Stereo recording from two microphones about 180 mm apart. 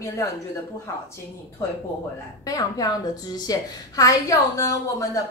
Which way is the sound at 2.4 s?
20° left (ahead or behind).